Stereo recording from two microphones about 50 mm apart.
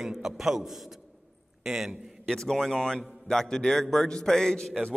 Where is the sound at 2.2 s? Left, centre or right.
Centre.